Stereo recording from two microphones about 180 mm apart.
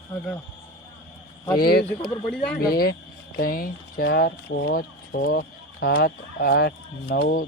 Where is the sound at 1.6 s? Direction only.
60° left (ahead or behind).